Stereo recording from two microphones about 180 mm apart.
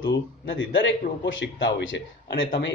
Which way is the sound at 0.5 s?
85° left.